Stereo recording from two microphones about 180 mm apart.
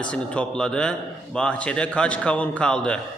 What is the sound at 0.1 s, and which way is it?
A man's voice, 5° left (ahead or behind).